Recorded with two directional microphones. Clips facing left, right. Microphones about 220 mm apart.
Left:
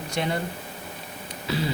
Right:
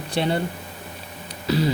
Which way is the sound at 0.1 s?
30° right (ahead or behind).